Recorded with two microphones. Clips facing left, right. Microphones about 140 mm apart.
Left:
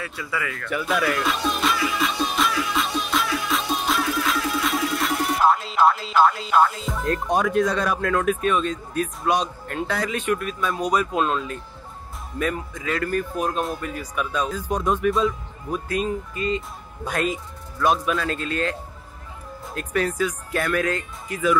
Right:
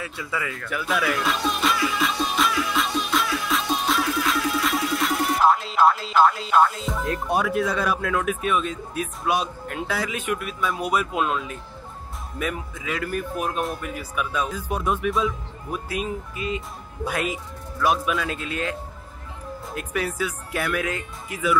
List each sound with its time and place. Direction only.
0.2 s speech: 25° right (ahead or behind)
0.7 s music: centre (ahead or behind)
12.4 s speech: 5° right (ahead or behind)